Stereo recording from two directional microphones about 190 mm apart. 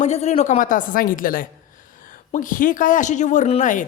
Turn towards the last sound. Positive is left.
turn(degrees=40)  # may be behind; listen again after turning